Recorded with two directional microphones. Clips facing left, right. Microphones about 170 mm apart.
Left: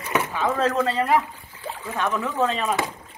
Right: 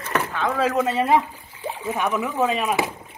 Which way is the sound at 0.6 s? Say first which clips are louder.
Right 3 dB; 15° right (ahead or behind).